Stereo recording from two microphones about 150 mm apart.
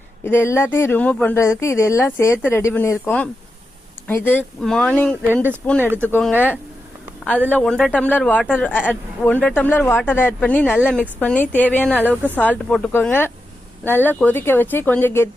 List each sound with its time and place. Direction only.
0.3 s speech: 15° left (ahead or behind)
5.2 s speech: 15° right (ahead or behind)
5.6 s speech: 5° left (ahead or behind)